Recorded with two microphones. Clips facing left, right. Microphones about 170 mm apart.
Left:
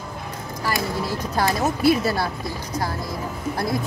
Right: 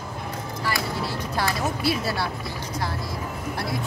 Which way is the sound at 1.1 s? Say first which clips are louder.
Left 4 dB; 45° left (ahead or behind).